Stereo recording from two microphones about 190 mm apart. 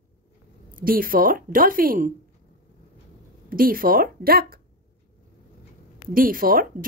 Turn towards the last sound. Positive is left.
turn(degrees=-50)  # may be behind; listen again after turning